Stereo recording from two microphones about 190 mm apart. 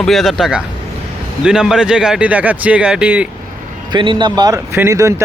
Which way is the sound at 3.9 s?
25° right (ahead or behind).